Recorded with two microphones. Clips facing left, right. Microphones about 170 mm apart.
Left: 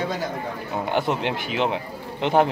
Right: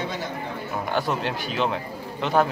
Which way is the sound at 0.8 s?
20° left (ahead or behind).